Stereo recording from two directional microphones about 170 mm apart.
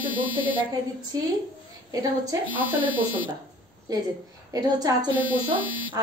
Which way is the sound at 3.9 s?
20° right (ahead or behind).